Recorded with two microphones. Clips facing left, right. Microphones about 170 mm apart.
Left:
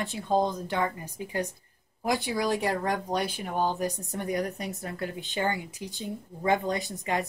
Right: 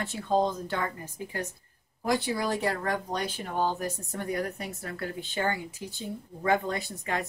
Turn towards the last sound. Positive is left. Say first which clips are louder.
# left 2 dB
turn(degrees=15)  # may be behind; listen again after turning